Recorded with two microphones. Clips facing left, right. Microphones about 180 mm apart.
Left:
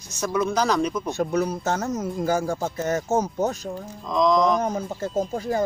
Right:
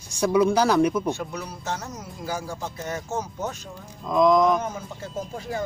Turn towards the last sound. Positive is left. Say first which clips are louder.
# left 7 dB
turn(degrees=45)  # may be behind; listen again after turning